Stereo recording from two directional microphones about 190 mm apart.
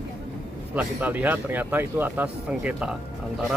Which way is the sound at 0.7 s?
10° right (ahead or behind).